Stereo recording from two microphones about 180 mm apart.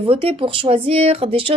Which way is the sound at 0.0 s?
30° right (ahead or behind).